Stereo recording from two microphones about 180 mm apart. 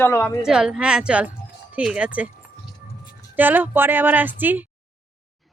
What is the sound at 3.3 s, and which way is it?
A woman's voice, 10° right (ahead or behind).